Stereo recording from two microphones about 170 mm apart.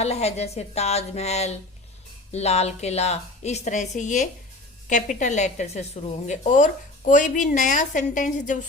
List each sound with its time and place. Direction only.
0.0 s a woman's voice: 40° left (ahead or behind)